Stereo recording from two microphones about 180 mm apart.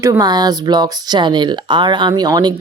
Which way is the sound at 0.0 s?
20° right (ahead or behind).